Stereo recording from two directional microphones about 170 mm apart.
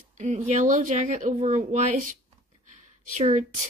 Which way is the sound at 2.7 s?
45° right (ahead or behind).